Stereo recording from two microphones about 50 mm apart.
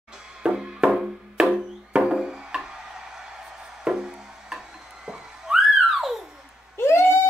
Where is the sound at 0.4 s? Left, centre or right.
Centre.